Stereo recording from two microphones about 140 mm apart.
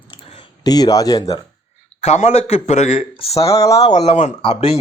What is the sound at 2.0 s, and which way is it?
Speech, 50° left (ahead or behind).